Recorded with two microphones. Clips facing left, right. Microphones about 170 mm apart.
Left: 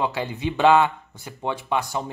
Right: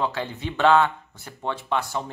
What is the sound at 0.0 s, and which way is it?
Speech, 10° left (ahead or behind).